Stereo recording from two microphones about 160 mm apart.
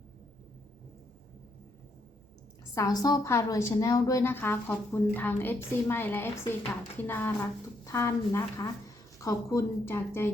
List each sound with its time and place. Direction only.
2.7 s a woman's voice: 25° left (ahead or behind)